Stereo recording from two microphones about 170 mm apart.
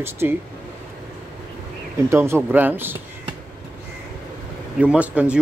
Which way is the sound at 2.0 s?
15° right (ahead or behind).